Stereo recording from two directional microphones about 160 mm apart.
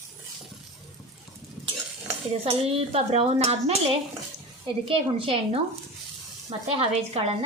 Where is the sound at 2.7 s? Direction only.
40° right (ahead or behind).